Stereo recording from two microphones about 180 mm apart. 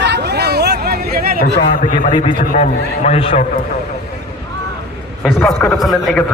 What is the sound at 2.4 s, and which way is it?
A man's voice, 45° left (ahead or behind).